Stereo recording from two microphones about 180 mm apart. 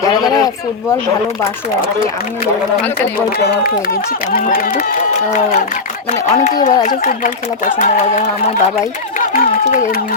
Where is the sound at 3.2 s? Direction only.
55° left (ahead or behind).